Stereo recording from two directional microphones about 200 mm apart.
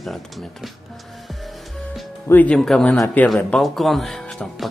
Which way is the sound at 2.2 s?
10° left (ahead or behind).